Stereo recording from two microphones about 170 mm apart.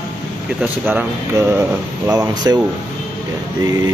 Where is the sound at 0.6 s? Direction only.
10° right (ahead or behind).